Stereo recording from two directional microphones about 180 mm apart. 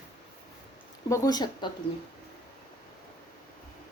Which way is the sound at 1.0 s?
20° left (ahead or behind).